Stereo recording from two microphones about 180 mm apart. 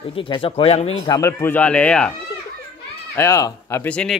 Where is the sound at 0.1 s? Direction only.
30° left (ahead or behind).